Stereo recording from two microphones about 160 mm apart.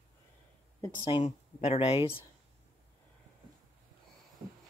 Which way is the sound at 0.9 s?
35° left (ahead or behind).